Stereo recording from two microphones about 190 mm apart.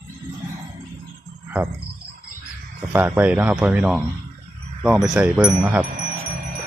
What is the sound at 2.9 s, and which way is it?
Speech, 10° right (ahead or behind).